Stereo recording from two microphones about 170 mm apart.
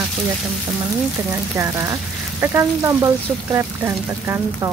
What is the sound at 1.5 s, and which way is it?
Speech, 15° right (ahead or behind).